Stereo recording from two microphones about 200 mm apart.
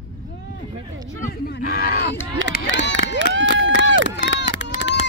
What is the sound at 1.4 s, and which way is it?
Speech, 50° left (ahead or behind).